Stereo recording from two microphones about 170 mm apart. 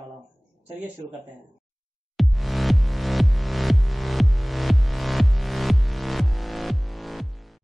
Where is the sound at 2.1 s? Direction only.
Centre (ahead or behind).